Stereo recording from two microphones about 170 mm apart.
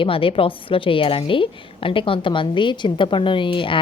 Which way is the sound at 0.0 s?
30° left (ahead or behind).